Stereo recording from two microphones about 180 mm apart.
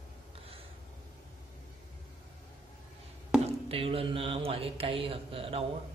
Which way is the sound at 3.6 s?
30° right (ahead or behind).